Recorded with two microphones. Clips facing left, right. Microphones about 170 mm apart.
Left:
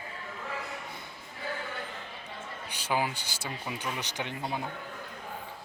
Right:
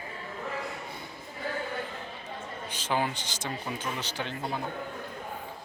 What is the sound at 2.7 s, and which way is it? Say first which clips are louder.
Speech: right 1 dB; 10° left (ahead or behind).